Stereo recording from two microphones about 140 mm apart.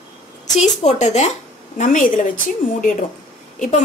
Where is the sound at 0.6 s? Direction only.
55° left (ahead or behind).